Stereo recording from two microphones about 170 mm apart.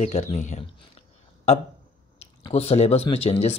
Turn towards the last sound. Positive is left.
turn(degrees=40)  # may be behind; listen again after turning